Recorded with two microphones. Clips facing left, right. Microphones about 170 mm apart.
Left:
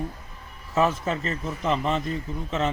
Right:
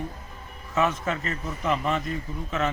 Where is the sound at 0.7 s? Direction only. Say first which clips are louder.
Left 2 dB; 30° left (ahead or behind).